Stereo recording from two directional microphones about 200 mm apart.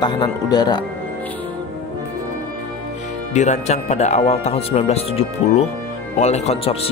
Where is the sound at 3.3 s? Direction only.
35° left (ahead or behind).